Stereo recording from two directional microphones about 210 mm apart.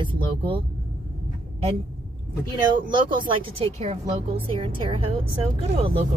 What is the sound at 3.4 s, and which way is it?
Speech, 25° right (ahead or behind).